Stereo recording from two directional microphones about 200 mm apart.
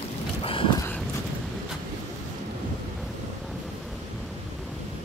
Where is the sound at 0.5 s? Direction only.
25° left (ahead or behind).